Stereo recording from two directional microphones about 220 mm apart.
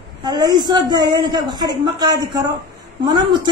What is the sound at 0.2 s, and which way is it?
A woman's voice, 15° right (ahead or behind).